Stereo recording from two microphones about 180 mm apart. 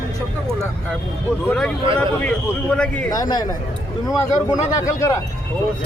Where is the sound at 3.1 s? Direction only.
20° left (ahead or behind).